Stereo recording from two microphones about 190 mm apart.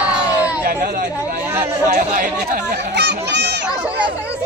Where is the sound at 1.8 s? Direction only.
40° right (ahead or behind); by 3.2 s 65° right (ahead or behind).